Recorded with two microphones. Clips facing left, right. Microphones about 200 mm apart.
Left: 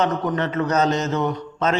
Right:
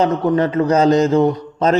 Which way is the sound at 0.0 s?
30° right (ahead or behind).